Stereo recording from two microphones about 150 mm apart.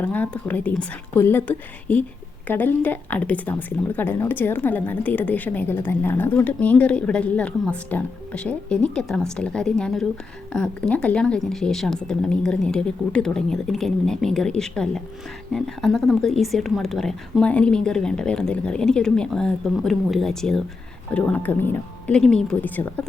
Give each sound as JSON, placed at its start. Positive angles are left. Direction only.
{"t": 0.0, "sound": "speech", "side_deg": 10}